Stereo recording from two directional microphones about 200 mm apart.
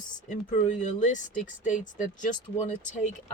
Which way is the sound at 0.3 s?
40° left (ahead or behind).